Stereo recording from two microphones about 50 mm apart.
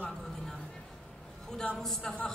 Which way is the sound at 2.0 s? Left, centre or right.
Centre.